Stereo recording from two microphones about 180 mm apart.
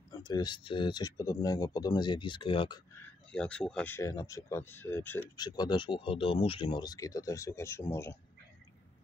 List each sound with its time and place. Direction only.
0.1 s speech: 25° left (ahead or behind)
3.3 s speech: 5° left (ahead or behind)
5.4 s speech: 25° left (ahead or behind)